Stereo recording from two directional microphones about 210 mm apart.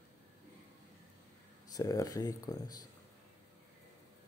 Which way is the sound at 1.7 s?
15° left (ahead or behind).